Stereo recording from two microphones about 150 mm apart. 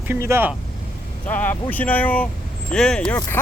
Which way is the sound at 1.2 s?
10° left (ahead or behind).